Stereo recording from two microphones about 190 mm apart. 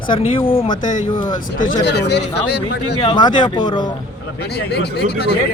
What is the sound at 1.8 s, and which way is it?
Speech, 60° left (ahead or behind).